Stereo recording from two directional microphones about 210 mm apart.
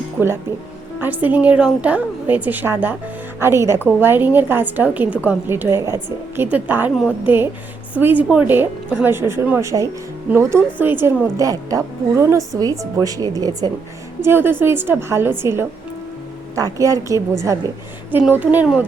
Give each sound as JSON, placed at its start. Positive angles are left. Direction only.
{"t": 0.2, "sound": "a woman's voice", "side_deg": -10}